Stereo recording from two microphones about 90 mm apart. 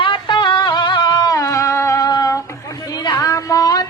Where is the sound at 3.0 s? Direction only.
45° left (ahead or behind).